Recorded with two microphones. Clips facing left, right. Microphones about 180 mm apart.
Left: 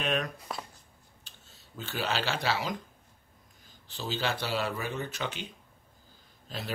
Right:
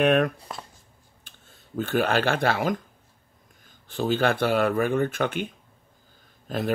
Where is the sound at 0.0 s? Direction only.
60° right (ahead or behind).